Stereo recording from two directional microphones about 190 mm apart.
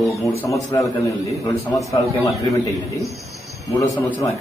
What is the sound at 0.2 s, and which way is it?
A man's voice, 15° left (ahead or behind).